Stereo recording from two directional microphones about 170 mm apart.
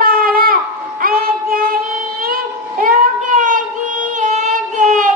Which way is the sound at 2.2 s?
55° right (ahead or behind).